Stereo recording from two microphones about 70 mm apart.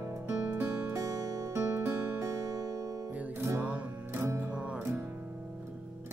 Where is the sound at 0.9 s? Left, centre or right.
Right.